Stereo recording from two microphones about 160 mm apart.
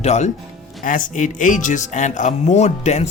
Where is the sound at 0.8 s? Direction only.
55° left (ahead or behind).